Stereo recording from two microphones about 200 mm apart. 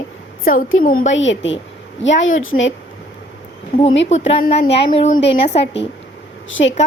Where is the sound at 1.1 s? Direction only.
70° left (ahead or behind).